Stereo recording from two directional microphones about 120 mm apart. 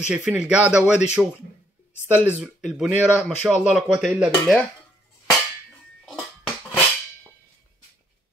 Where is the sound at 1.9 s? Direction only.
15° left (ahead or behind).